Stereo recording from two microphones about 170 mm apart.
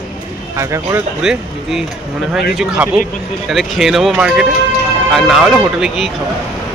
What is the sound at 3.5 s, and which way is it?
Speech, centre (ahead or behind).